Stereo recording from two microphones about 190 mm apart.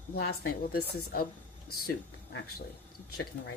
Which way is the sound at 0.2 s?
55° left (ahead or behind).